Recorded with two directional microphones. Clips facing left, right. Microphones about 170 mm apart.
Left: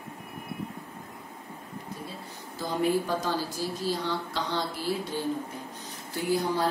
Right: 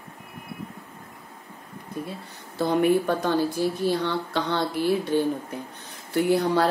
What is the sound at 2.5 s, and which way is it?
A woman's voice, 65° right (ahead or behind).